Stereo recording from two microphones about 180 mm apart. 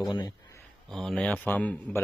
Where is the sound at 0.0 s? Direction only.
25° left (ahead or behind).